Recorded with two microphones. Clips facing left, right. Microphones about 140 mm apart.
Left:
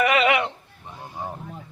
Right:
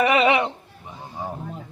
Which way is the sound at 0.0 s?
25° right (ahead or behind).